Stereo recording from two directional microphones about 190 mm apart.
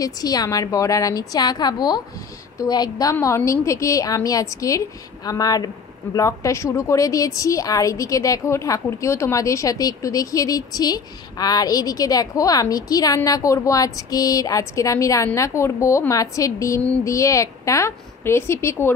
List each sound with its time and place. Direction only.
0.0 s a woman's voice: 20° left (ahead or behind)